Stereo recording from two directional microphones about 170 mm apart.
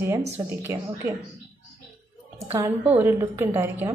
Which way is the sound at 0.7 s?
15° right (ahead or behind).